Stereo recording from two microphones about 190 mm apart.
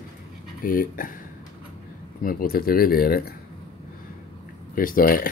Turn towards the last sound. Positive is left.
turn(degrees=50)  # may be behind; listen again after turning